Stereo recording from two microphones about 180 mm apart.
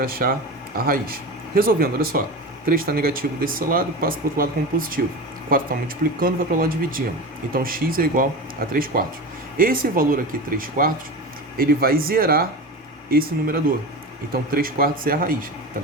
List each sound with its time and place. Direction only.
0.0 s speech: 55° right (ahead or behind)